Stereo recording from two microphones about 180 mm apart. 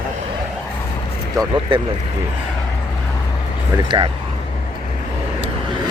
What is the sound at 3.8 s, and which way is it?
Speech, 25° right (ahead or behind).